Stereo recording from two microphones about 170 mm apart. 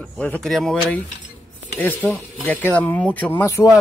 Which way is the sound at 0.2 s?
5° left (ahead or behind).